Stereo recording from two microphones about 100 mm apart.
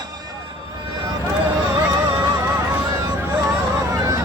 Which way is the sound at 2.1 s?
15° right (ahead or behind).